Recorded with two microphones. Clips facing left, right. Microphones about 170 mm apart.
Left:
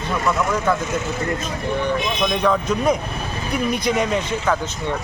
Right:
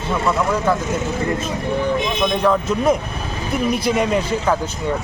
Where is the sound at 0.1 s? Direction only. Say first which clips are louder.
Right 2 dB; 25° right (ahead or behind).